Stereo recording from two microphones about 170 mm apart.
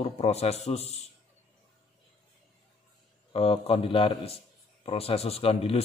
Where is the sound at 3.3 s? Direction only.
35° left (ahead or behind).